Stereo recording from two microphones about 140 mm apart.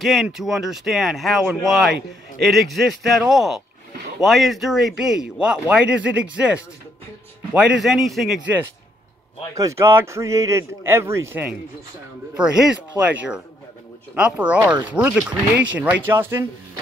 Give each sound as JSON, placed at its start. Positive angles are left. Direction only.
{"t": 0.0, "sound": "a man's voice", "side_deg": 0}
{"t": 9.6, "sound": "speech", "side_deg": -20}
{"t": 12.4, "sound": "speech", "side_deg": -5}
{"t": 14.7, "sound": "speech", "side_deg": -30}
{"t": 15.0, "sound": "speech", "side_deg": -10}